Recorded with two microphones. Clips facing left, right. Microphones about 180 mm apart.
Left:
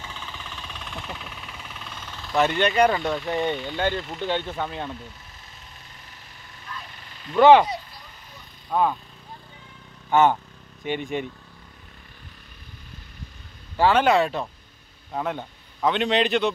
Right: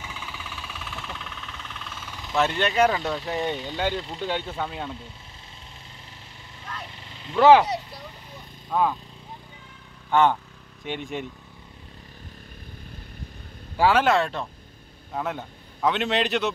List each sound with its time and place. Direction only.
0.0 s vehicle: 10° right (ahead or behind)
2.0 s vehicle: 10° right (ahead or behind)
2.3 s speech: centre (ahead or behind)
7.0 s vehicle: 25° right (ahead or behind)
7.3 s speech: 5° right (ahead or behind)
8.6 s speech: centre (ahead or behind)
10.0 s speech: 5° left (ahead or behind)
13.7 s a man's voice: 5° right (ahead or behind)